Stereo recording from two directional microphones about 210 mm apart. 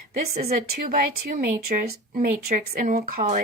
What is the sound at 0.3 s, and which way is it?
A woman's voice, 35° right (ahead or behind).